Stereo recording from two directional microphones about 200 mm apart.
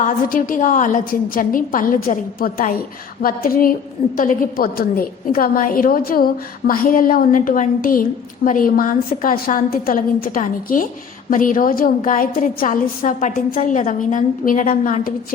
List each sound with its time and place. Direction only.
0.0 s a woman's voice: 45° left (ahead or behind)